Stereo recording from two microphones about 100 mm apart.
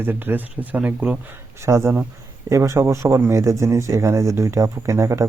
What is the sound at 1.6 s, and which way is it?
Speech, 25° right (ahead or behind).